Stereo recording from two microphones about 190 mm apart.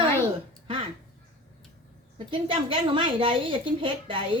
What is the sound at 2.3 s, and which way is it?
A woman's voice, 30° right (ahead or behind).